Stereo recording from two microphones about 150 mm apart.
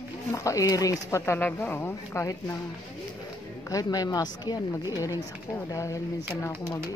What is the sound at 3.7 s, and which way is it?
Speech, 25° left (ahead or behind).